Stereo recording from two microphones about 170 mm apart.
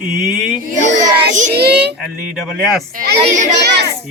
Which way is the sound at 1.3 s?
45° right (ahead or behind).